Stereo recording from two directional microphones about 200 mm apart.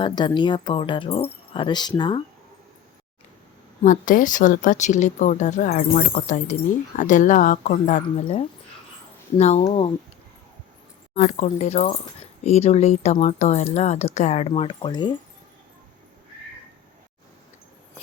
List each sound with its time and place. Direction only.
0.0 s speech: 20° left (ahead or behind)
3.8 s speech: 40° left (ahead or behind)
11.1 s speech: 35° left (ahead or behind)